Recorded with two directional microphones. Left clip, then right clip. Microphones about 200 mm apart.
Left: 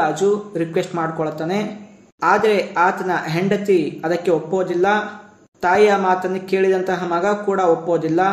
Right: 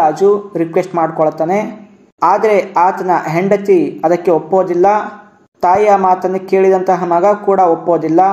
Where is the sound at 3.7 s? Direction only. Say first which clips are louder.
Right 6 dB; 10° right (ahead or behind).